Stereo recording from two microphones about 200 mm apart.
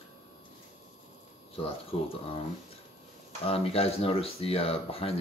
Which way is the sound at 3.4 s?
30° left (ahead or behind).